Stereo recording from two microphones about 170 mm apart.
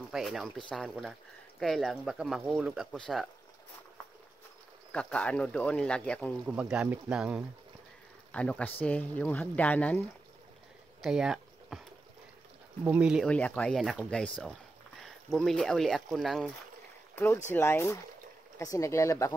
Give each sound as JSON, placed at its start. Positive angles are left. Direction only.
{"t": 0.1, "sound": "speech", "side_deg": 0}
{"t": 4.9, "sound": "speech", "side_deg": 5}
{"t": 6.4, "sound": "speech", "side_deg": -5}
{"t": 8.3, "sound": "speech", "side_deg": 5}
{"t": 11.0, "sound": "a sound", "side_deg": -5}
{"t": 12.8, "sound": "speech", "side_deg": -5}
{"t": 13.3, "sound": "speech", "side_deg": 5}
{"t": 17.1, "sound": "speech", "side_deg": 15}